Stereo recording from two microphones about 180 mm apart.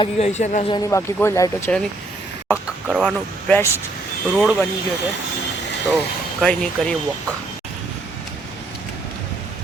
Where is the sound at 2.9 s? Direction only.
5° left (ahead or behind).